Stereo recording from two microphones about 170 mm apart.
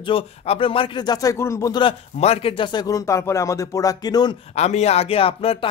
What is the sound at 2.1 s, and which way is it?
A man's voice, 35° left (ahead or behind).